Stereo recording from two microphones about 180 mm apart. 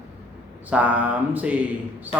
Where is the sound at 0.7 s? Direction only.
10° right (ahead or behind).